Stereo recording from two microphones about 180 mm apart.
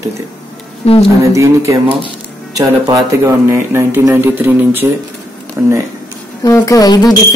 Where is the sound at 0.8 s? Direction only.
35° left (ahead or behind).